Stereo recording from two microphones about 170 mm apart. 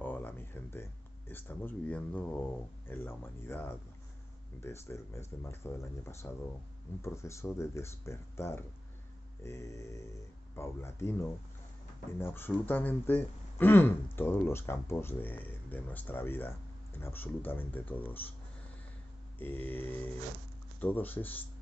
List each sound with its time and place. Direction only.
0.0 s a sound: 10° left (ahead or behind)
1.3 s speech: 10° left (ahead or behind)
19.3 s speech: 10° left (ahead or behind)